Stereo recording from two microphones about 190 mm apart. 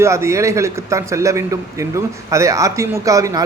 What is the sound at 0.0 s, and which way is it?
A man's voice, 15° right (ahead or behind).